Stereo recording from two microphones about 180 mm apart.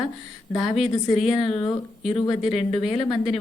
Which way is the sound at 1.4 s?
30° left (ahead or behind).